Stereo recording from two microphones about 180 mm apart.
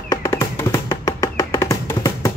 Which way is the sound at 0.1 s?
15° left (ahead or behind).